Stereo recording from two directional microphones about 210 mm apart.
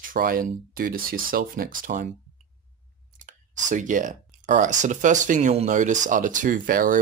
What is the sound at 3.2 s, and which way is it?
Speech, 40° right (ahead or behind).